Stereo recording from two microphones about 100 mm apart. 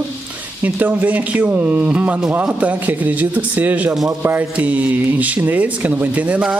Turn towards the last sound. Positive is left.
turn(degrees=-10)  # may be behind; listen again after turning